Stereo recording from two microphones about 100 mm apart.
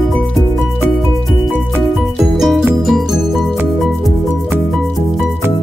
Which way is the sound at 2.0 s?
Centre (ahead or behind).